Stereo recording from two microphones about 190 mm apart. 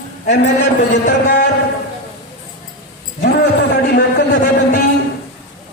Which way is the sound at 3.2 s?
60° left (ahead or behind).